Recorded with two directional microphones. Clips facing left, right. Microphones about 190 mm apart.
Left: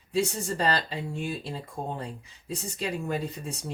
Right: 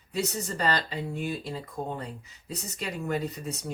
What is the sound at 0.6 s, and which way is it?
Speech, 30° left (ahead or behind).